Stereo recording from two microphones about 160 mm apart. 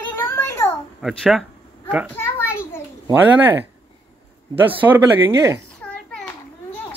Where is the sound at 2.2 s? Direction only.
15° left (ahead or behind).